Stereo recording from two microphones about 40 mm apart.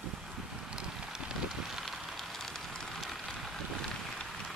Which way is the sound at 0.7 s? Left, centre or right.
Centre.